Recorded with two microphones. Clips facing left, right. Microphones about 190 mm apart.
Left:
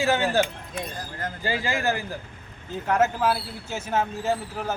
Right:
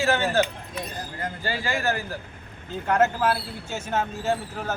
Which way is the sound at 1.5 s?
15° left (ahead or behind).